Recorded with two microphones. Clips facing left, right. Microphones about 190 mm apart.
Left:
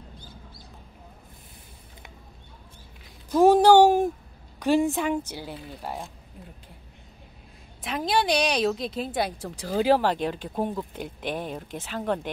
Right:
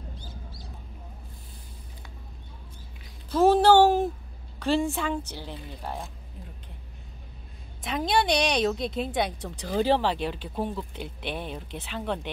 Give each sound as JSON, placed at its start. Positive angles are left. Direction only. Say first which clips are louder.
{"t": 3.3, "sound": "a woman's voice", "louder": "left 2 dB", "side_deg": 15}
{"t": 7.8, "sound": "a woman's voice", "louder": "even", "side_deg": 0}
{"t": 10.1, "sound": "speech", "louder": "left 2 dB", "side_deg": 45}
{"t": 10.5, "sound": "a woman's voice", "louder": "left 2 dB", "side_deg": 15}
{"t": 10.9, "sound": "speech", "louder": "left 3 dB", "side_deg": 45}